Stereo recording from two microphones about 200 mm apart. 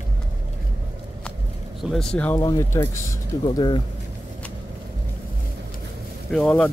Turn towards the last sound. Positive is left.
turn(degrees=0)  # may be behind; listen again after turning